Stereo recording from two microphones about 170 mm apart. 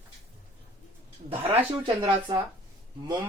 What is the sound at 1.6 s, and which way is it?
Speech, 30° right (ahead or behind).